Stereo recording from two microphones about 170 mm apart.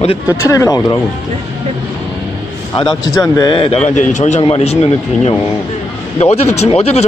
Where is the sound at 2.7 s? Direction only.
25° left (ahead or behind).